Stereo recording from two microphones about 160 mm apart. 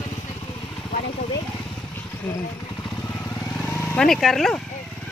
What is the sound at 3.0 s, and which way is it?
Vehicle, 15° left (ahead or behind).